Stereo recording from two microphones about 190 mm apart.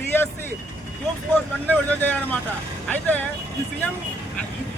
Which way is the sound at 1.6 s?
10° left (ahead or behind).